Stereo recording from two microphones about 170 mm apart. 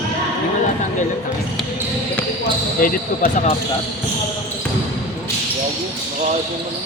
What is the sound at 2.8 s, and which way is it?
Speech, 50° left (ahead or behind).